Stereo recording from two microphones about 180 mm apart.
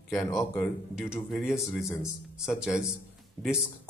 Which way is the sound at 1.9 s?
15° left (ahead or behind).